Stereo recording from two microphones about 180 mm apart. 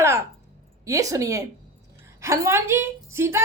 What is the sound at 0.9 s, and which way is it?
A woman's voice, 20° right (ahead or behind).